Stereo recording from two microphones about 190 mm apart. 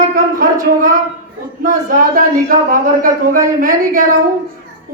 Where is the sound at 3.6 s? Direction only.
45° right (ahead or behind).